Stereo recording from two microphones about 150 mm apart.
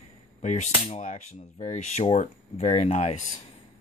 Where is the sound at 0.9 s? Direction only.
55° left (ahead or behind).